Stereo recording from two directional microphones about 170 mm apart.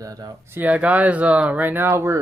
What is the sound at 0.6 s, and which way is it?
Speech, 10° right (ahead or behind).